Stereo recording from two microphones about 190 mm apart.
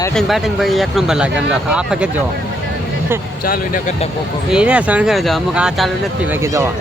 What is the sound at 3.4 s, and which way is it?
Speech, 50° left (ahead or behind).